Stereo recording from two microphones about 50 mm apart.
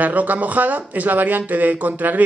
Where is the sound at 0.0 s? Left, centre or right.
Right.